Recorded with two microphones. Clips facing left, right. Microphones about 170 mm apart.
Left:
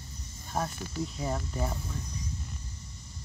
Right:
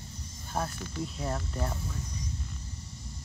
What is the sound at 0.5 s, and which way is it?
Speech, 5° right (ahead or behind).